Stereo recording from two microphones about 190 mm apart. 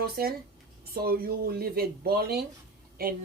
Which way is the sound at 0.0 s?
55° right (ahead or behind).